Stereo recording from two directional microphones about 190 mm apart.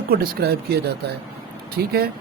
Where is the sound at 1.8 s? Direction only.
55° right (ahead or behind).